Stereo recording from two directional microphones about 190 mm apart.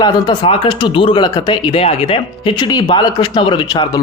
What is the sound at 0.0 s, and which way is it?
A man's voice, 25° left (ahead or behind).